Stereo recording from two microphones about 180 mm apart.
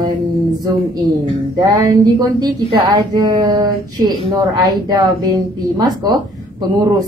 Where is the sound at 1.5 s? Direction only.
20° right (ahead or behind).